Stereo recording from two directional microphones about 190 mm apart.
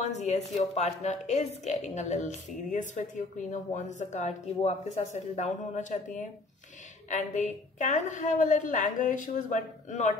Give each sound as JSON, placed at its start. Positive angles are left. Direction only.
{"t": 0.0, "sound": "a woman's voice", "side_deg": 35}